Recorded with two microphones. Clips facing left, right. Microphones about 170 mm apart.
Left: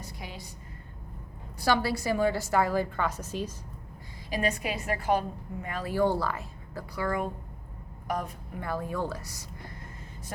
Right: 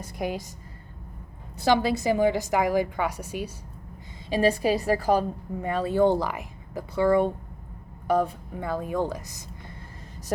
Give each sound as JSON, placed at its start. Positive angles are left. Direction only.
{"t": 0.0, "sound": "a woman's voice", "side_deg": -50}
{"t": 1.5, "sound": "a woman's voice", "side_deg": -20}
{"t": 4.3, "sound": "a woman's voice", "side_deg": -30}